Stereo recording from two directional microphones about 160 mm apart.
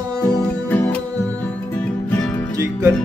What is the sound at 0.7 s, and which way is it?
Music, 10° left (ahead or behind).